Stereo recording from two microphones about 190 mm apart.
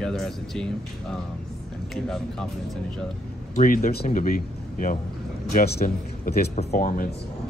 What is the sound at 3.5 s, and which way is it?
A man's voice, 45° left (ahead or behind).